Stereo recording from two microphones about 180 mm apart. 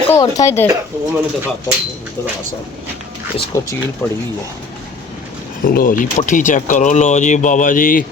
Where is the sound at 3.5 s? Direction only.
15° left (ahead or behind).